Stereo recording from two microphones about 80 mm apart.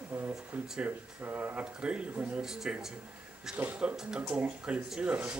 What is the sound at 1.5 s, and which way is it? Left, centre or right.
Speech, centre.